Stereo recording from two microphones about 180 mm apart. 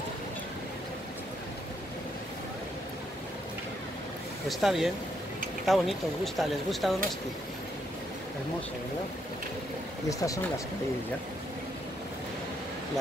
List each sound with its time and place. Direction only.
4.5 s speech: centre (ahead or behind)
10.0 s speech: 20° left (ahead or behind)